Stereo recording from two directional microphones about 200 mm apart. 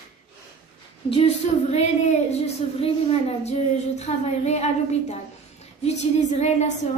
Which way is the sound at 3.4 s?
35° left (ahead or behind).